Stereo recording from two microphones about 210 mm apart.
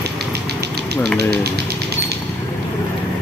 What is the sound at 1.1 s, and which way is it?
Speech, 50° right (ahead or behind).